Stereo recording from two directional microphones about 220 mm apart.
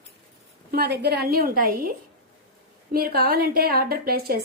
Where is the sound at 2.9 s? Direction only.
40° right (ahead or behind).